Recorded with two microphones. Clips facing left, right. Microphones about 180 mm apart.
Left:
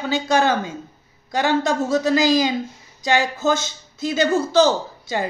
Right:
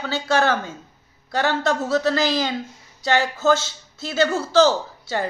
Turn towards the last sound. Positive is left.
turn(degrees=15)  # may be behind; listen again after turning